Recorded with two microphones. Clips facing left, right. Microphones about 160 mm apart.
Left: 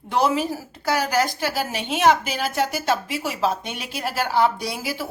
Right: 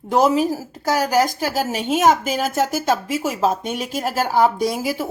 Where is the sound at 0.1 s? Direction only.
40° right (ahead or behind).